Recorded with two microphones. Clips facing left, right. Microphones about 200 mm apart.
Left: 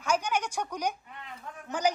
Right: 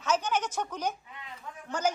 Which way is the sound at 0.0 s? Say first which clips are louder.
Even; 10° left (ahead or behind).